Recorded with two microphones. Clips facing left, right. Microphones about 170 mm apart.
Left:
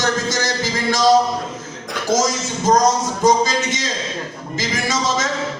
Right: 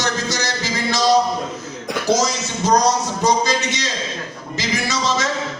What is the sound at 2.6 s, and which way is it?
Speech, 50° left (ahead or behind).